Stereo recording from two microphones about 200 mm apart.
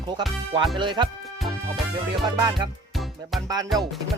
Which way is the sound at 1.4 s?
Centre (ahead or behind).